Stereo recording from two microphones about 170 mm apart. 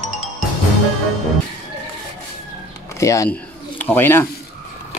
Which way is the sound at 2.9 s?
20° left (ahead or behind).